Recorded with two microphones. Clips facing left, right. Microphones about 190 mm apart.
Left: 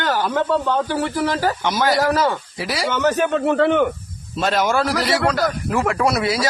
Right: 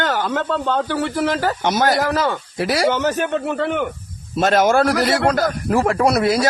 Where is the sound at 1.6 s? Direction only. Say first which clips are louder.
Right 2 dB; 50° right (ahead or behind).